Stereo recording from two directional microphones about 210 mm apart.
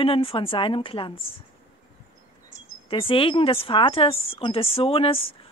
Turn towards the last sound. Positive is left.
turn(degrees=25)  # may be behind; listen again after turning